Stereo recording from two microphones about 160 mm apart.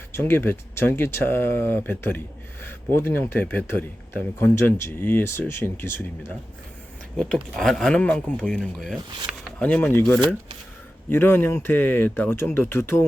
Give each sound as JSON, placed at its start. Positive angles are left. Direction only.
{"t": 0.1, "sound": "speech", "side_deg": 15}
{"t": 7.5, "sound": "speech", "side_deg": 0}
{"t": 9.0, "sound": "speech", "side_deg": -25}
{"t": 9.4, "sound": "speech", "side_deg": 10}
{"t": 11.1, "sound": "speech", "side_deg": 15}